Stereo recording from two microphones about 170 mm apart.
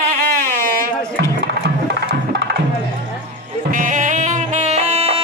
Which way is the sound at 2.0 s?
75° right (ahead or behind).